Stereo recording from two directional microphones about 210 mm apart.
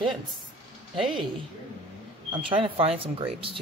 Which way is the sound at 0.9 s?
Centre (ahead or behind).